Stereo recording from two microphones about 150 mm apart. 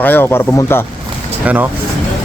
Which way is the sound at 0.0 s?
15° left (ahead or behind).